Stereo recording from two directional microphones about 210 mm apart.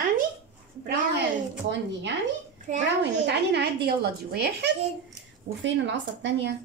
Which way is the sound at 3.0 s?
55° right (ahead or behind).